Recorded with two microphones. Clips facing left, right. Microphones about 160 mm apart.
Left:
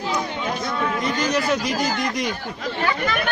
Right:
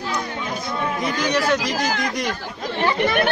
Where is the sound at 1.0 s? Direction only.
Centre (ahead or behind).